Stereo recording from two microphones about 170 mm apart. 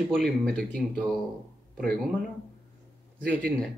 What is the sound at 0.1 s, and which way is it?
Speech, centre (ahead or behind).